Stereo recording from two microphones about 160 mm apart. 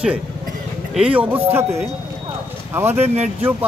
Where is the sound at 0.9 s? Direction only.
5° right (ahead or behind).